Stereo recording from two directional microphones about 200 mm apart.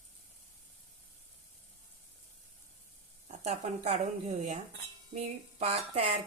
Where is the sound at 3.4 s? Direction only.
35° right (ahead or behind).